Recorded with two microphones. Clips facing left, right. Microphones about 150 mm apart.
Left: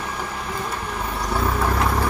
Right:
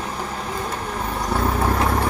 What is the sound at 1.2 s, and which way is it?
Vehicle, 40° right (ahead or behind).